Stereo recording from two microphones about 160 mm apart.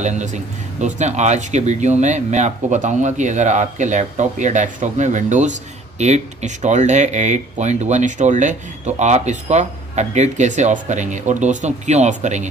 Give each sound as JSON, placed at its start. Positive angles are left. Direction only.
{"t": 0.0, "sound": "speech", "side_deg": -45}